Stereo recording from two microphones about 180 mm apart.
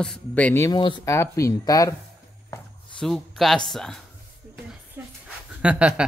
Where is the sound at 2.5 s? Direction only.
15° left (ahead or behind).